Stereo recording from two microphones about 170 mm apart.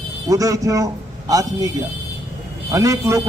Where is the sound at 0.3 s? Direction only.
20° right (ahead or behind).